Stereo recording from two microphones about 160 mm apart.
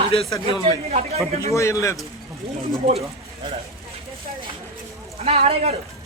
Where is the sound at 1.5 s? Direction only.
20° left (ahead or behind).